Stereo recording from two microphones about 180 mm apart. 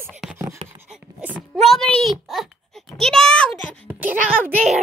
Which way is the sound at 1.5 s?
Centre (ahead or behind).